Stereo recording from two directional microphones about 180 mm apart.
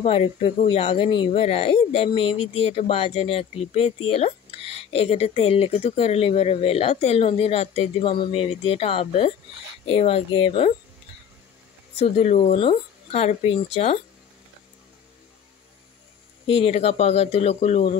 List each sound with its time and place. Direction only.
0.0 s speech: 35° left (ahead or behind)
12.0 s speech: 35° left (ahead or behind)
16.4 s speech: 30° left (ahead or behind)